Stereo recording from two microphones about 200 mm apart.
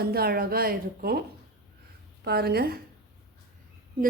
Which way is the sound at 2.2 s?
50° right (ahead or behind).